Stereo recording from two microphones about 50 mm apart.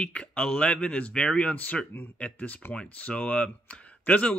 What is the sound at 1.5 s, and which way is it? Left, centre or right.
Speech, left.